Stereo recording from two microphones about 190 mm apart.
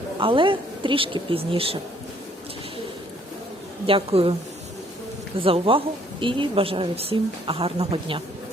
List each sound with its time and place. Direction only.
0.2 s a woman's voice: 25° right (ahead or behind)
3.8 s a woman's voice: 30° right (ahead or behind)
5.4 s a woman's voice: 30° right (ahead or behind)